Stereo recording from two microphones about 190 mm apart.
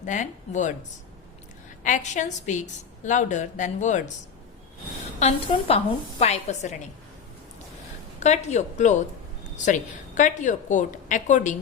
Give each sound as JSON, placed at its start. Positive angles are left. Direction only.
{"t": 0.0, "sound": "a woman's voice", "side_deg": 40}
{"t": 5.2, "sound": "a woman's voice", "side_deg": 30}
{"t": 8.2, "sound": "a woman's voice", "side_deg": 35}